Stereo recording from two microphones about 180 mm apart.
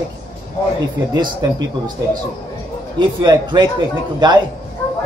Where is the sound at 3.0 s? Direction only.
25° right (ahead or behind).